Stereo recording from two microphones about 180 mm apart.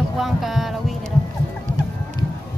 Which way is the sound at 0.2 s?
Centre (ahead or behind).